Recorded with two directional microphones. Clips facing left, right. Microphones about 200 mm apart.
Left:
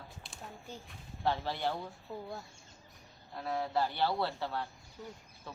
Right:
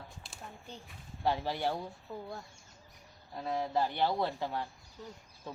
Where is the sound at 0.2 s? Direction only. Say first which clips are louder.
Even; centre (ahead or behind).